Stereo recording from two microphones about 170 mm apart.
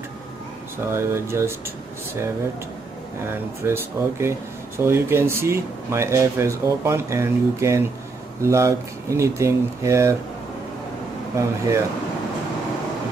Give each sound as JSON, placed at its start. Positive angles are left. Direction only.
{"t": 0.9, "sound": "speech", "side_deg": -15}
{"t": 3.3, "sound": "speech", "side_deg": -15}
{"t": 11.3, "sound": "speech", "side_deg": -15}